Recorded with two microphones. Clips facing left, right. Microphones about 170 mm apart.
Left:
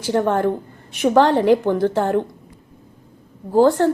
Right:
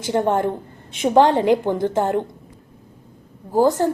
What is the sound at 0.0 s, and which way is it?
A woman's voice, 20° right (ahead or behind).